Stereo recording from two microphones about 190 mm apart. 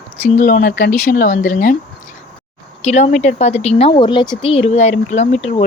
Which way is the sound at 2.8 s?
35° left (ahead or behind).